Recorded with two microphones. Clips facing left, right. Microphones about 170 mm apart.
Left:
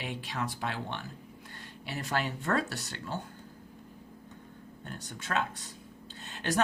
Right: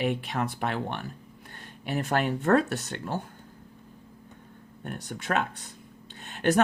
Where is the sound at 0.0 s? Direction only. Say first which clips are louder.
Right 8 dB; 55° right (ahead or behind).